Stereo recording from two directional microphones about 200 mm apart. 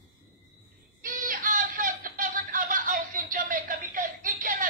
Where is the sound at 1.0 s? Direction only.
40° right (ahead or behind).